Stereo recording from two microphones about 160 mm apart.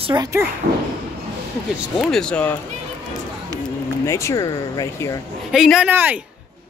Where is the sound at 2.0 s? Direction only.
5° left (ahead or behind).